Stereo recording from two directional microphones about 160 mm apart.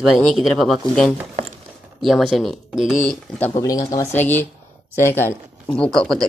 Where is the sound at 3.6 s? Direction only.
20° left (ahead or behind).